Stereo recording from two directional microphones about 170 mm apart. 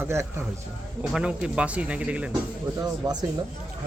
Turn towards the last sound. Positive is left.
turn(degrees=-25)  # may be behind; listen again after turning